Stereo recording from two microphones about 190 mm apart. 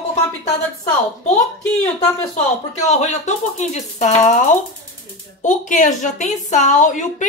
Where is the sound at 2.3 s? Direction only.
35° left (ahead or behind).